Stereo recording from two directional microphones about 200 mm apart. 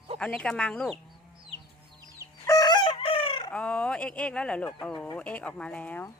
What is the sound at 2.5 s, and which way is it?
Chicken, 20° left (ahead or behind).